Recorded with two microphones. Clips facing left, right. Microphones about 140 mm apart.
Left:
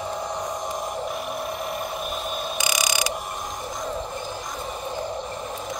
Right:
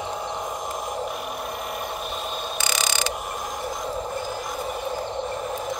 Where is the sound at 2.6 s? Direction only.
10° left (ahead or behind).